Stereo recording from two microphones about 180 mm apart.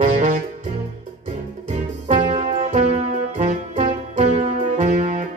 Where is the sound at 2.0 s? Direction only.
45° right (ahead or behind).